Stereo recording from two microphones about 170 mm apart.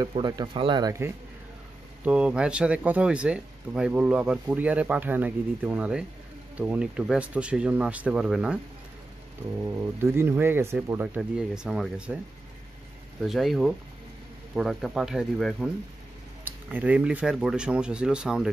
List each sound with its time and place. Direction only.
0.1 s speech: 25° right (ahead or behind)
2.0 s speech: 5° right (ahead or behind)
10.1 s speech: 15° right (ahead or behind)
11.1 s speech: 5° right (ahead or behind)
13.2 s speech: centre (ahead or behind)